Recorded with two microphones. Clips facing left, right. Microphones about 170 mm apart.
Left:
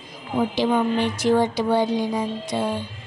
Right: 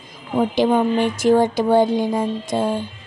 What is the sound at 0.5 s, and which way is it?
Speech, 50° right (ahead or behind).